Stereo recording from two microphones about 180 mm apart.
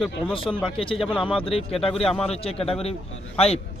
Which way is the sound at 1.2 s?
30° left (ahead or behind).